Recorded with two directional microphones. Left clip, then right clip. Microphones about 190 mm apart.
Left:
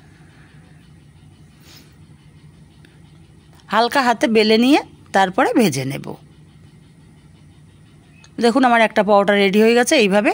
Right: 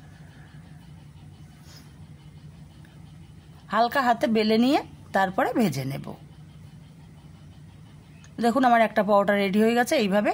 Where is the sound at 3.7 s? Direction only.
30° left (ahead or behind).